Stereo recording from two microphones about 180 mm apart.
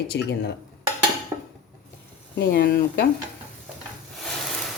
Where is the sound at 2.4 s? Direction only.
65° left (ahead or behind).